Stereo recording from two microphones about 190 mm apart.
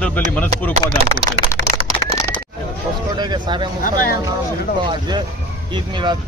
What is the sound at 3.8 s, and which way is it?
Speech, 45° left (ahead or behind).